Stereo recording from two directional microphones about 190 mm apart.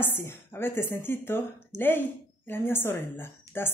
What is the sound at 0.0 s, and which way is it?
A woman's voice, 10° left (ahead or behind).